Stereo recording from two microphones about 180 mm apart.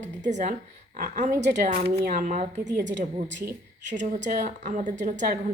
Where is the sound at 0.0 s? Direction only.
45° right (ahead or behind).